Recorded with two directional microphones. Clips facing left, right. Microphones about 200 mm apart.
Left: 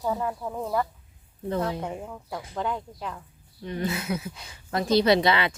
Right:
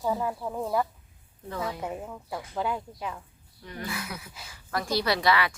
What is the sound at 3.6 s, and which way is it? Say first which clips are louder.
Speech: left 6 dB; 25° left (ahead or behind).